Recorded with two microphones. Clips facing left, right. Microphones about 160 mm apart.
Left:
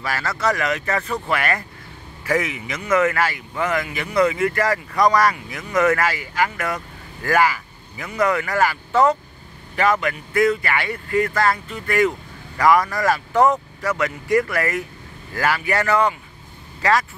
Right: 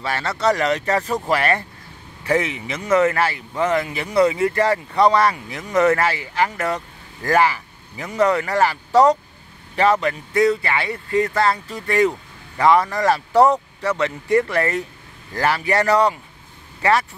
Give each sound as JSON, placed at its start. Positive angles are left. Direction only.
{"t": 0.0, "sound": "speech", "side_deg": -30}